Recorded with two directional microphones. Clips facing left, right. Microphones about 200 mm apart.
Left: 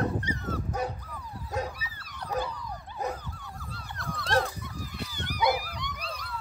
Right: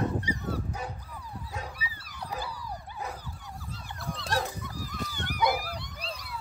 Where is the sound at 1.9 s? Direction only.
5° right (ahead or behind).